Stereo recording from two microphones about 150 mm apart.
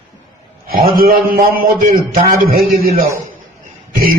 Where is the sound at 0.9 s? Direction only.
70° right (ahead or behind).